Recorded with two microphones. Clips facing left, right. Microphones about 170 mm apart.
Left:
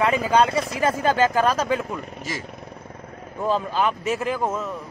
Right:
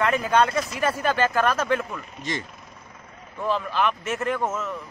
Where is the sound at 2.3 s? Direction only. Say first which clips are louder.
Right 3 dB; 5° left (ahead or behind).